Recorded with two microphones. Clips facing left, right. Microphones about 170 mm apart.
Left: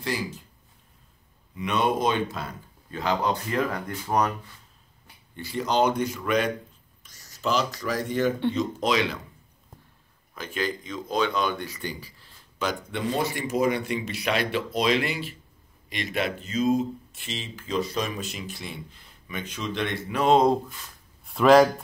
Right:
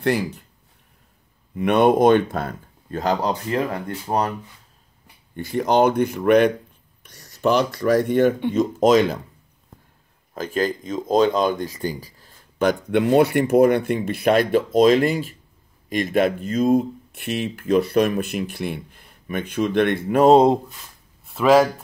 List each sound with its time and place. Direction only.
0.0 s speech: 60° right (ahead or behind)
1.5 s speech: 55° right (ahead or behind); by 4.3 s 30° right (ahead or behind)
5.3 s speech: 50° right (ahead or behind)
8.5 s speech: 45° right (ahead or behind)
10.3 s speech: 45° right (ahead or behind)
21.2 s speech: centre (ahead or behind)